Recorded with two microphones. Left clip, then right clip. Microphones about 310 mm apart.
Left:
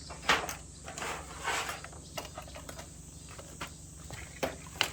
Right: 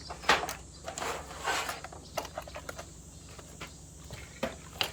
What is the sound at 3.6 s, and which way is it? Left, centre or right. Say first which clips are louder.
Walk: left 3 dB; centre.